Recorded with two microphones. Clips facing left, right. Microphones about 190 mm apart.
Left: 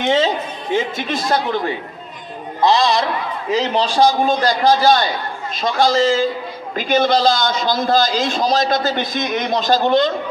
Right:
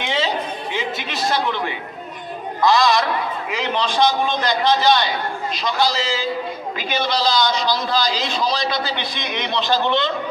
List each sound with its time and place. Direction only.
0.0 s a man's voice: 40° left (ahead or behind)
2.6 s a man's voice: 30° left (ahead or behind)